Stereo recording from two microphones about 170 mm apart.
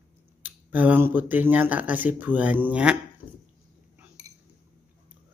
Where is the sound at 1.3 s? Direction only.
10° right (ahead or behind).